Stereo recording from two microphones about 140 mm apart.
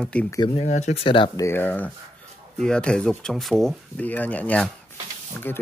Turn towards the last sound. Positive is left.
turn(degrees=15)  # may be behind; listen again after turning